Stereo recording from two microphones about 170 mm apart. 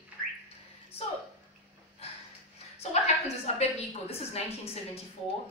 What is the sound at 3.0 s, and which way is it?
A woman's voice, 40° left (ahead or behind).